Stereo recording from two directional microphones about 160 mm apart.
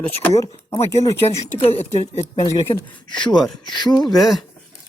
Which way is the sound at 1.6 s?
40° left (ahead or behind).